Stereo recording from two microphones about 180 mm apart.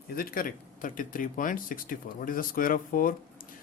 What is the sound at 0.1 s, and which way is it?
Speech, 55° left (ahead or behind).